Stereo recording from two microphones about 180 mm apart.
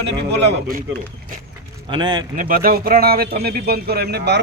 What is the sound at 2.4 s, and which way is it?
Speech, 50° right (ahead or behind).